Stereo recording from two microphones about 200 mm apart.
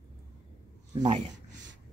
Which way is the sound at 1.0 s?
35° right (ahead or behind).